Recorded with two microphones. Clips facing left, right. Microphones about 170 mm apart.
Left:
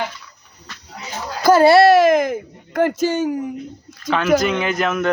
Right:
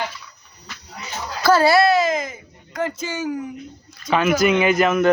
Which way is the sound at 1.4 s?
15° left (ahead or behind).